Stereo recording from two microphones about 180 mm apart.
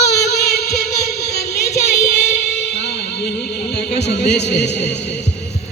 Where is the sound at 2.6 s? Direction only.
70° left (ahead or behind).